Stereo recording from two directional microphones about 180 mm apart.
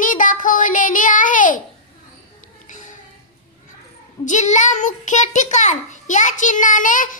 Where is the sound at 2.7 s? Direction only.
45° left (ahead or behind).